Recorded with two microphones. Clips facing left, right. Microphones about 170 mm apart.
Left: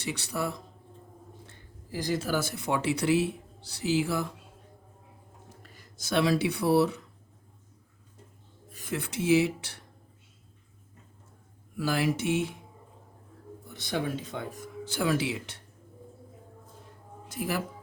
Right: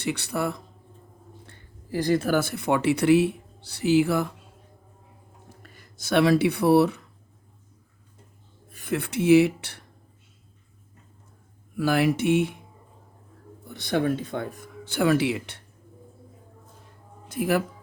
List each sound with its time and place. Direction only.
0.0 s speech: 60° right (ahead or behind)
5.7 s speech: 60° right (ahead or behind)
8.7 s speech: 60° right (ahead or behind)
11.8 s speech: 60° right (ahead or behind)
13.7 s speech: 55° right (ahead or behind)
17.2 s speech: 60° right (ahead or behind)